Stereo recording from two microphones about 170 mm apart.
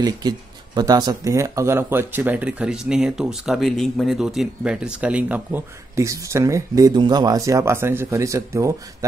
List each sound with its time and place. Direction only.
0.0 s speech: 25° right (ahead or behind)